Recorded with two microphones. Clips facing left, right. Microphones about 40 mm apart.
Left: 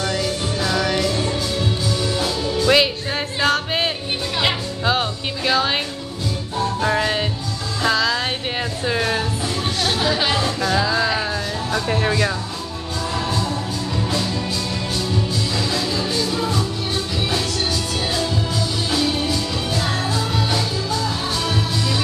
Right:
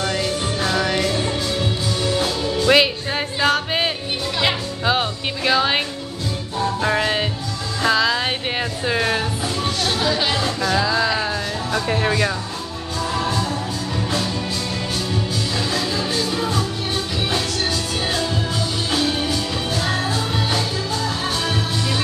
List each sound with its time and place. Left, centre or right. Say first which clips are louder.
0.0 s music: even; right
2.6 s music: right 1 dB; centre
9.8 s speech: left 1 dB; centre
10.7 s music: right 1 dB; centre
15.5 s music: right 1 dB; right
17.3 s music: even; right
18.9 s music: even; right